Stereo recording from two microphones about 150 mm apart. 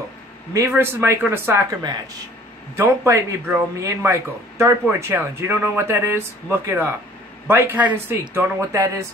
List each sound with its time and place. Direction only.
0.5 s speech: 15° right (ahead or behind)
2.8 s speech: 15° right (ahead or behind)